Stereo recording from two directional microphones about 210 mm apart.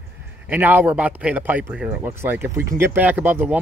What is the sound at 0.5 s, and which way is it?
Speech, 10° right (ahead or behind).